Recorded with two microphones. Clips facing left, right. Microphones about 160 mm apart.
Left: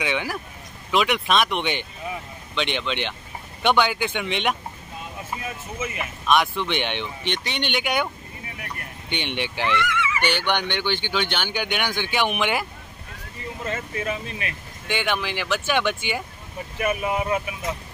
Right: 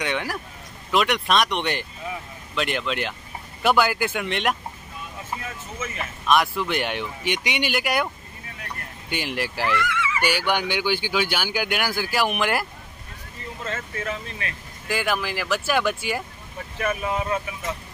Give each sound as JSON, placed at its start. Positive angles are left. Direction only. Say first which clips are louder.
{"t": 0.0, "sound": "speech", "louder": "left 1 dB", "side_deg": 0}
{"t": 6.2, "sound": "speech", "louder": "even", "side_deg": 0}
{"t": 9.1, "sound": "speech", "louder": "even", "side_deg": -5}
{"t": 13.7, "sound": "speech", "louder": "left 2 dB", "side_deg": 15}
{"t": 14.9, "sound": "speech", "louder": "even", "side_deg": 0}
{"t": 16.8, "sound": "speech", "louder": "left 1 dB", "side_deg": 15}